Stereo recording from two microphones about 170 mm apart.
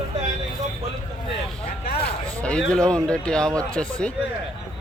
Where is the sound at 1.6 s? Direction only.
60° left (ahead or behind).